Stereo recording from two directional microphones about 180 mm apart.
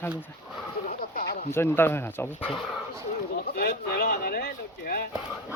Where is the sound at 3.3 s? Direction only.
60° left (ahead or behind).